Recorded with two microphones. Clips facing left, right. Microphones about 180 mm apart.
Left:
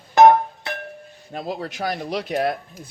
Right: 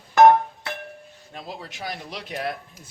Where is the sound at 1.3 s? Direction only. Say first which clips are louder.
Left 9 dB; 50° left (ahead or behind).